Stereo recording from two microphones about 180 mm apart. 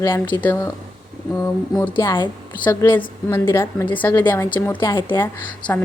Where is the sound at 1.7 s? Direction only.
10° left (ahead or behind).